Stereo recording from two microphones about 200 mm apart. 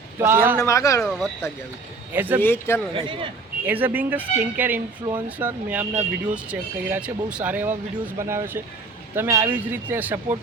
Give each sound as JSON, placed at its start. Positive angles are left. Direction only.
{"t": 0.2, "sound": "speech", "side_deg": -10}
{"t": 0.6, "sound": "speech", "side_deg": 15}
{"t": 2.1, "sound": "speech", "side_deg": -10}
{"t": 2.4, "sound": "speech", "side_deg": 10}
{"t": 2.9, "sound": "speech", "side_deg": -25}
{"t": 3.7, "sound": "speech", "side_deg": -10}